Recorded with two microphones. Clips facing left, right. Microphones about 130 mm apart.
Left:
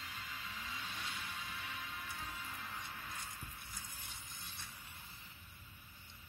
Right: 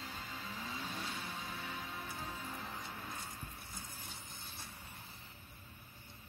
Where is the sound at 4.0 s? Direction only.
30° right (ahead or behind).